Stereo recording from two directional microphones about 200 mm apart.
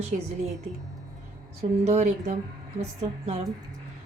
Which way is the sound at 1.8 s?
35° right (ahead or behind).